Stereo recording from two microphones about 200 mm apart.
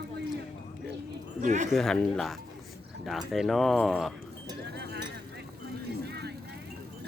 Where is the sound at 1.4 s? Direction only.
35° right (ahead or behind).